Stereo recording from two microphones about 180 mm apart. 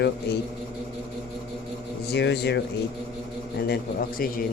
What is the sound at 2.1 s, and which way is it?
Speech, 65° left (ahead or behind).